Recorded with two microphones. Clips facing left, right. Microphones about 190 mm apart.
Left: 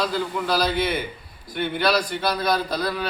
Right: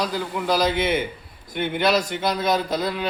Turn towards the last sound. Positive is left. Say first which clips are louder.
# right 1 dB
turn(degrees=-20)  # may be behind; listen again after turning